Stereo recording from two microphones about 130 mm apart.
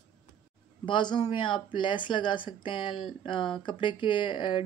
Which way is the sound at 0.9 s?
35° left (ahead or behind).